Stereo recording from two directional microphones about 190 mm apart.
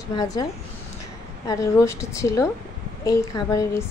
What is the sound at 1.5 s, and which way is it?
A woman's voice, 15° left (ahead or behind).